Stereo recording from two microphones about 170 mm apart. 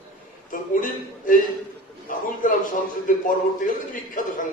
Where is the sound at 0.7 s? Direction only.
50° left (ahead or behind).